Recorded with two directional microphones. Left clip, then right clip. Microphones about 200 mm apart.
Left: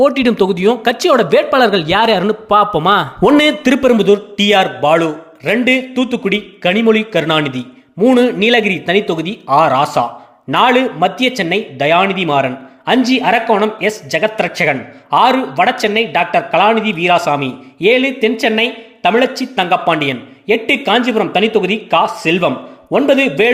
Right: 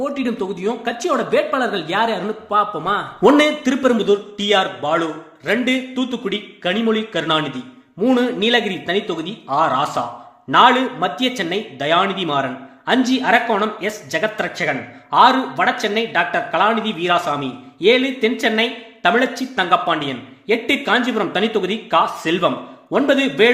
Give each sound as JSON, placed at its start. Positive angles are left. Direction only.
{"t": 0.0, "sound": "a man's voice", "side_deg": 50}